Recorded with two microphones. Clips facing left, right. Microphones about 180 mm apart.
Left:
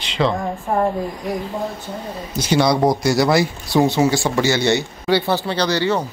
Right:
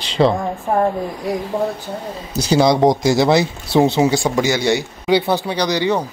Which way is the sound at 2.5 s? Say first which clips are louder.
Right 3 dB; 25° right (ahead or behind).